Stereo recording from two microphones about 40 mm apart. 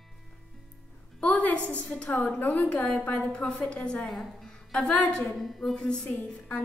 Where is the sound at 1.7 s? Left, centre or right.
Left.